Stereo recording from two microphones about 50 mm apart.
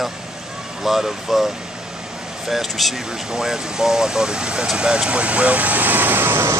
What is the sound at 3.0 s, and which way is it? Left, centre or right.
Speech, centre.